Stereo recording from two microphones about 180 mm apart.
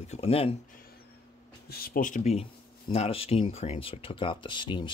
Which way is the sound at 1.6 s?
55° left (ahead or behind).